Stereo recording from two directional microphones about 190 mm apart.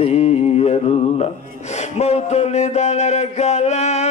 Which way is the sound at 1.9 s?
35° left (ahead or behind).